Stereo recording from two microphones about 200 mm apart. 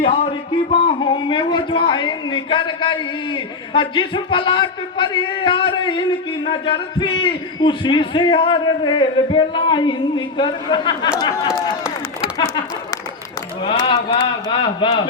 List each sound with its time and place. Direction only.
0.0 s a man's voice: 30° left (ahead or behind)
13.6 s a man's voice: 25° left (ahead or behind)